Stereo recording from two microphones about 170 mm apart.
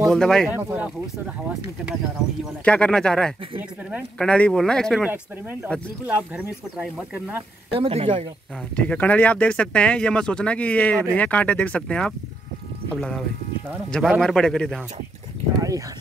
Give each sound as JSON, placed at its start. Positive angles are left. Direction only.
{"t": 0.0, "sound": "speech", "side_deg": 5}
{"t": 2.6, "sound": "speech", "side_deg": 5}
{"t": 5.0, "sound": "speech", "side_deg": -10}
{"t": 7.7, "sound": "speech", "side_deg": -35}
{"t": 8.7, "sound": "speech", "side_deg": 10}
{"t": 14.2, "sound": "speech", "side_deg": 5}
{"t": 15.5, "sound": "dog", "side_deg": -20}